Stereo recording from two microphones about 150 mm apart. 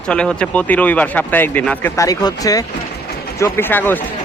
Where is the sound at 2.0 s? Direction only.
25° left (ahead or behind).